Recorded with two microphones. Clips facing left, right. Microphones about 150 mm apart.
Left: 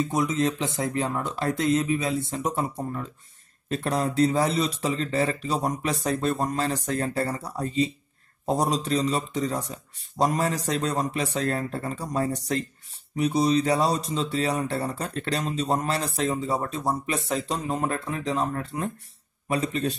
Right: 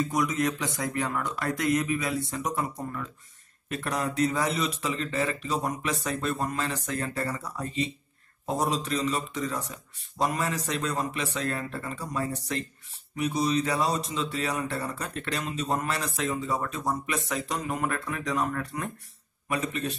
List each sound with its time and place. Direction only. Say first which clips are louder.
0.0 s speech: left 2 dB; 25° left (ahead or behind)